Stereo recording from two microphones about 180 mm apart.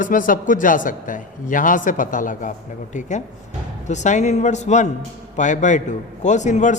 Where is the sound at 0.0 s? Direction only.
50° left (ahead or behind).